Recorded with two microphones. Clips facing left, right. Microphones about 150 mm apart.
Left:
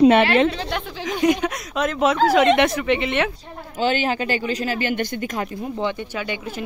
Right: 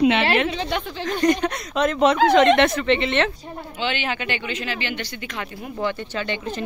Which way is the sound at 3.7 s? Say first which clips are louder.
Left 6 dB; 40° left (ahead or behind).